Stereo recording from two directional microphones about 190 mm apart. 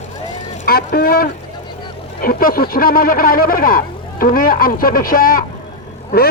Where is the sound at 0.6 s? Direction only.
50° left (ahead or behind).